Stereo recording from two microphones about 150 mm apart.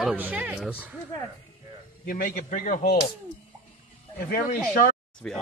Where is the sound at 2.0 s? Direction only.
70° left (ahead or behind); by 3.0 s 55° left (ahead or behind).